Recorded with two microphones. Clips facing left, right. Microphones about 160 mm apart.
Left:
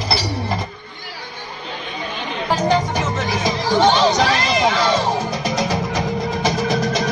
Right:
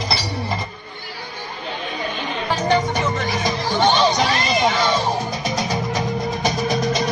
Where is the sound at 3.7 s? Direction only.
90° left.